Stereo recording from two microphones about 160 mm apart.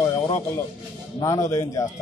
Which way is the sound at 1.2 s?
20° left (ahead or behind).